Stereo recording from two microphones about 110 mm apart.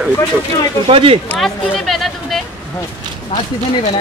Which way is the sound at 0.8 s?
60° right (ahead or behind).